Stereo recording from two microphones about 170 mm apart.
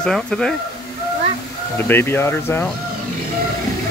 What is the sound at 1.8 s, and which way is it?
Speech, 15° left (ahead or behind).